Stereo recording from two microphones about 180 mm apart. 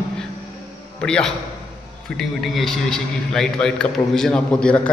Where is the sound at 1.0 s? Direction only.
5° left (ahead or behind).